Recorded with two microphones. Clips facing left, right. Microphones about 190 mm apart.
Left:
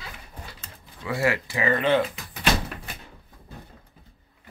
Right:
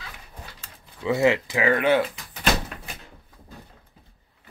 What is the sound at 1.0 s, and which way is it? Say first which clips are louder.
Speech: right 5 dB; 20° right (ahead or behind).